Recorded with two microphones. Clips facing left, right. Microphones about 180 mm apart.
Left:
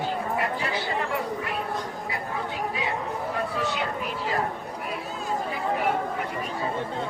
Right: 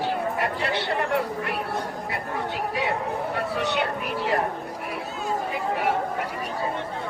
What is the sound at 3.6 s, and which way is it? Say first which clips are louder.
Speech: right 3 dB; 70° right (ahead or behind).